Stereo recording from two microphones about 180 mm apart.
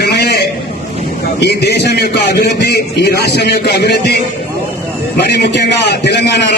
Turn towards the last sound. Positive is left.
turn(degrees=70)  # may be behind; listen again after turning